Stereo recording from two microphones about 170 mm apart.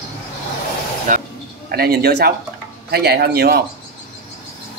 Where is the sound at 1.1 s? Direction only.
50° right (ahead or behind).